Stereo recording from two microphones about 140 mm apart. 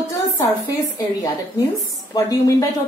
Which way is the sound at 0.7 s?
25° left (ahead or behind).